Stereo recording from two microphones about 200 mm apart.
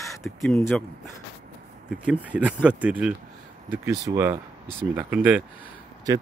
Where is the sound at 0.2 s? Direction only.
5° left (ahead or behind).